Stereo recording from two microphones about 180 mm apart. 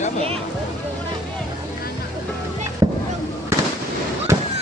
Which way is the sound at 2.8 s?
20° right (ahead or behind).